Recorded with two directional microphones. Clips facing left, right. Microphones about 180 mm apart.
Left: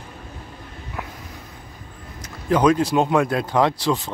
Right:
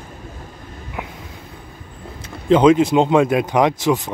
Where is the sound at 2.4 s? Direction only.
25° right (ahead or behind).